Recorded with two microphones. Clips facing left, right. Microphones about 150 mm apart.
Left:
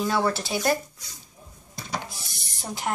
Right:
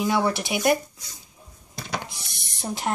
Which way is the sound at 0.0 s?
15° right (ahead or behind).